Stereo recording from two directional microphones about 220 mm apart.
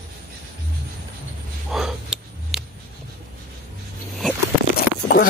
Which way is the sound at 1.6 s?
Centre (ahead or behind).